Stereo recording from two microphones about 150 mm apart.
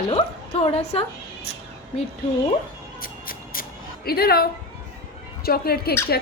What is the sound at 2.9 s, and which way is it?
Music, 70° left (ahead or behind).